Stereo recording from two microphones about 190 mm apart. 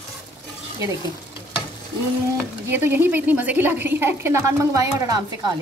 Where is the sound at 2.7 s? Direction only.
10° right (ahead or behind).